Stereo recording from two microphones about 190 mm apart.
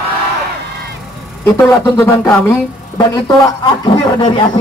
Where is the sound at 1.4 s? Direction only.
15° left (ahead or behind).